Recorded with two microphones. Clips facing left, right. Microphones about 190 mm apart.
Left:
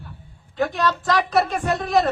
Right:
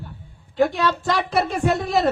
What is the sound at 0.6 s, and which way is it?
Speech, 30° right (ahead or behind).